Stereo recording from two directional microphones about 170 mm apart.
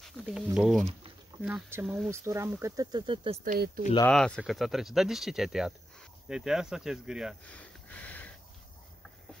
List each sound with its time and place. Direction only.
0.2 s speech: centre (ahead or behind); by 3.3 s 30° right (ahead or behind)
3.4 s speech: 60° right (ahead or behind)
4.1 s speech: centre (ahead or behind)
7.4 s sniff: 10° left (ahead or behind)